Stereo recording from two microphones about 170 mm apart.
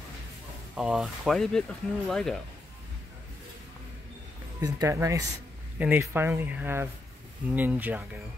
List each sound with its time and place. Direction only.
0.7 s speech: 5° right (ahead or behind)
4.6 s speech: 20° right (ahead or behind)